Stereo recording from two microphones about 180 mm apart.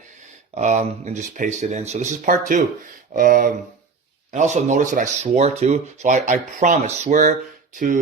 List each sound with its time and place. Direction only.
0.5 s speech: 40° right (ahead or behind)
3.1 s a sound: 50° right (ahead or behind)
4.3 s speech: 40° right (ahead or behind)